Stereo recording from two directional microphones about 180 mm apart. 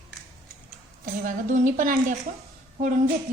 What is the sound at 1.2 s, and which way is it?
Speech, 45° right (ahead or behind).